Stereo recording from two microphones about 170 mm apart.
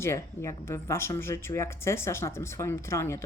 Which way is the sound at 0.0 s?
15° left (ahead or behind).